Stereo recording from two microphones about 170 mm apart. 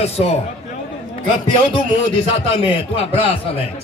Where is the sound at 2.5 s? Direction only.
35° left (ahead or behind).